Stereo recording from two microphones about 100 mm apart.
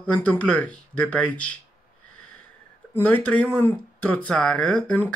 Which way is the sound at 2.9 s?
20° left (ahead or behind).